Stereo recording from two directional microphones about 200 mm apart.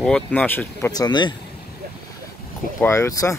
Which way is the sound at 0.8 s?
20° left (ahead or behind).